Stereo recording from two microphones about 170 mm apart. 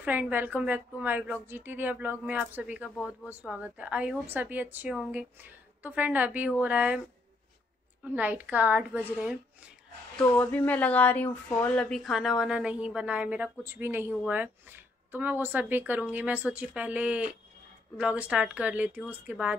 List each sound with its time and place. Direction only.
0.0 s speech: 10° right (ahead or behind)
8.0 s speech: 10° right (ahead or behind)
10.1 s speech: 10° left (ahead or behind); by 19.5 s 5° right (ahead or behind)